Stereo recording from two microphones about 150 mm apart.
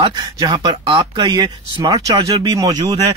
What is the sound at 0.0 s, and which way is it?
Speech, 30° right (ahead or behind).